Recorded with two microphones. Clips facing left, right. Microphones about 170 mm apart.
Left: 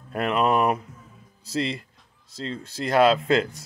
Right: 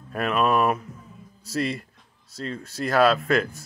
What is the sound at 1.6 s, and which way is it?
Speech, 25° left (ahead or behind).